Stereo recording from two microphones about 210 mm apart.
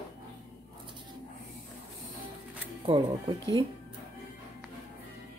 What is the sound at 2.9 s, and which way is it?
Speech, 25° right (ahead or behind).